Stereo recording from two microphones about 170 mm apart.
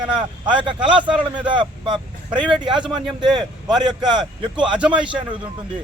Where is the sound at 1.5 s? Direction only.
30° right (ahead or behind).